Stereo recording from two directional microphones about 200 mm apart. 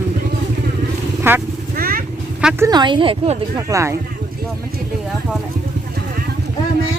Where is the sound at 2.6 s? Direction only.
20° right (ahead or behind).